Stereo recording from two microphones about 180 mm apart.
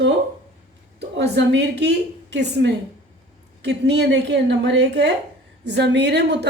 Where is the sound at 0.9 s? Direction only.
70° right (ahead or behind).